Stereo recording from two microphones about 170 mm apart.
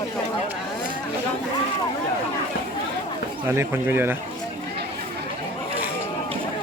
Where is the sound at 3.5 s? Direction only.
15° right (ahead or behind).